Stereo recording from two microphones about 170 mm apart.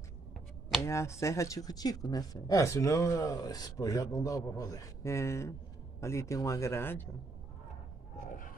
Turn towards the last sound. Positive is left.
turn(degrees=15)  # may be behind; listen again after turning